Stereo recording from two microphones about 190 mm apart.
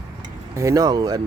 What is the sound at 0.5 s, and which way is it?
Speech, 15° right (ahead or behind).